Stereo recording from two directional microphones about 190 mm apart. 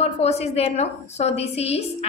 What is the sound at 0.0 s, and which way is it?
A woman's voice, 35° left (ahead or behind).